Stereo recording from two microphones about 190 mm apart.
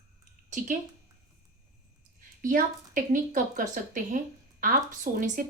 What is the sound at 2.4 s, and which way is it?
Speech, 45° right (ahead or behind).